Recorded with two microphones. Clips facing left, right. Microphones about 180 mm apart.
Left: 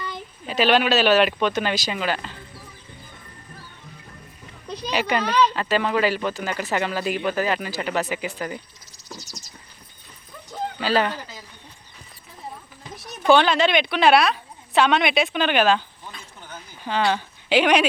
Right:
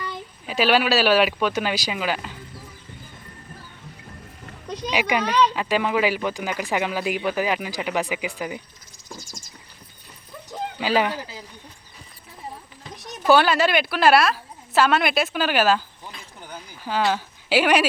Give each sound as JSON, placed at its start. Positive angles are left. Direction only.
{"t": 0.0, "sound": "speech", "side_deg": -10}
{"t": 4.9, "sound": "speech", "side_deg": -10}
{"t": 9.1, "sound": "a sound", "side_deg": -50}
{"t": 10.8, "sound": "speech", "side_deg": -10}
{"t": 12.9, "sound": "speech", "side_deg": 0}
{"t": 16.4, "sound": "a sound", "side_deg": -10}